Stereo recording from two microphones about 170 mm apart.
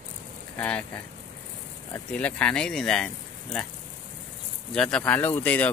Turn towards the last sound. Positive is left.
turn(degrees=10)  # may be behind; listen again after turning